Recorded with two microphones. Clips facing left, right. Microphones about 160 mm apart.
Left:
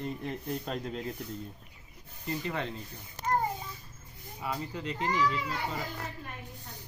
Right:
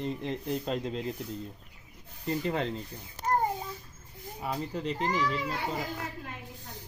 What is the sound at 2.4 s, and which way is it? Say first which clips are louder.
Speech: right 4 dB; 40° right (ahead or behind).